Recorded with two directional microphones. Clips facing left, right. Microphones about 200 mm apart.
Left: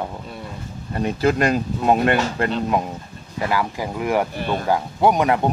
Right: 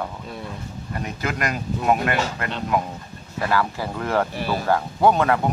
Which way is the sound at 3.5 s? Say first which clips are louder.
Even; 15° left (ahead or behind).